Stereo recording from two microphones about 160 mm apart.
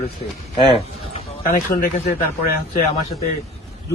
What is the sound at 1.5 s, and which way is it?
Speech, 80° left.